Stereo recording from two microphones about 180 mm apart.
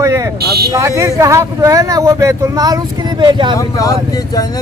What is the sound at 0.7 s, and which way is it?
Speech, 20° right (ahead or behind).